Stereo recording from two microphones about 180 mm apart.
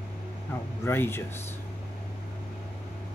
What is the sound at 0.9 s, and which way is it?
Speech, 10° left (ahead or behind).